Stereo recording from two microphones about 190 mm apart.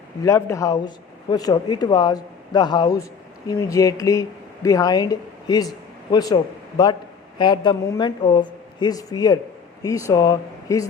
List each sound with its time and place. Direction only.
0.2 s speech: 15° left (ahead or behind)